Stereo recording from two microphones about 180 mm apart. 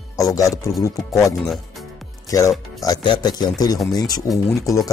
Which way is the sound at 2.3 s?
20° left (ahead or behind).